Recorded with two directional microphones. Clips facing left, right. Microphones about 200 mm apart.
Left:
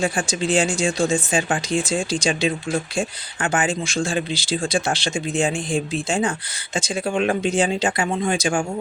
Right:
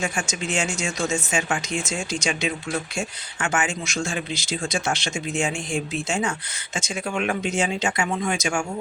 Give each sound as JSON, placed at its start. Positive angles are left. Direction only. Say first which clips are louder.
{"t": 0.0, "sound": "speech", "louder": "left 5 dB", "side_deg": 35}